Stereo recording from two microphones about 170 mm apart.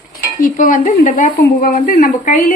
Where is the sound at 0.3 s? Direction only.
50° left (ahead or behind).